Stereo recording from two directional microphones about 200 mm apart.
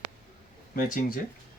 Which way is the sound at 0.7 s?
45° left (ahead or behind).